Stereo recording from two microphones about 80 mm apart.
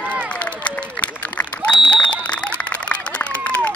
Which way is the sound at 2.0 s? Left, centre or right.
Centre.